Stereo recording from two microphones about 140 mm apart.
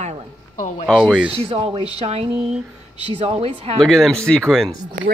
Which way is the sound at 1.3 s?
45° right (ahead or behind).